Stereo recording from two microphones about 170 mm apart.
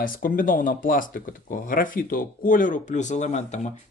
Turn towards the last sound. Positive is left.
turn(degrees=45)  # may be behind; listen again after turning